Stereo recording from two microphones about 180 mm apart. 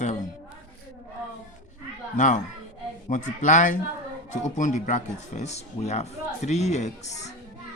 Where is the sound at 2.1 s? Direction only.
45° left (ahead or behind).